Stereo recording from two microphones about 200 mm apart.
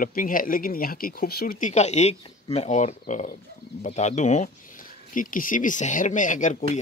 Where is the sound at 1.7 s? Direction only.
35° left (ahead or behind).